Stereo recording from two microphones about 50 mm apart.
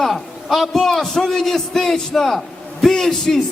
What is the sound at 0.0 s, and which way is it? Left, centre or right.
A man's voice, centre.